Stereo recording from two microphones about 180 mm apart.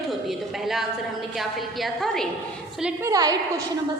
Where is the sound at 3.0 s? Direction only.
20° right (ahead or behind).